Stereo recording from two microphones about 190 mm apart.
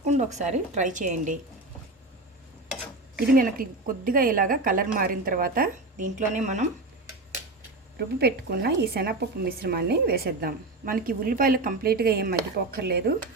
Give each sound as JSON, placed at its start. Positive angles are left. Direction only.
{"t": 0.0, "sound": "a woman's voice", "side_deg": -40}
{"t": 3.3, "sound": "speech", "side_deg": -45}
{"t": 7.9, "sound": "a woman's voice", "side_deg": -60}